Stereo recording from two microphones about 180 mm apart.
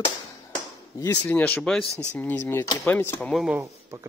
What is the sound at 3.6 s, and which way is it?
Speech, 20° right (ahead or behind).